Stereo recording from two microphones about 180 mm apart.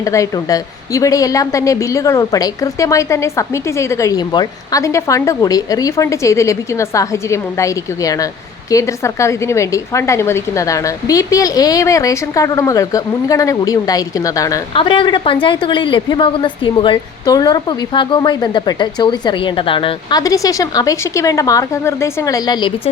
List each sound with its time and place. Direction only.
0.0 s a woman's voice: 15° left (ahead or behind)
14.8 s a woman's voice: 30° left (ahead or behind)